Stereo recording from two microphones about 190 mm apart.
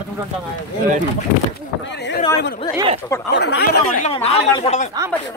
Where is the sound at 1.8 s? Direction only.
70° left (ahead or behind).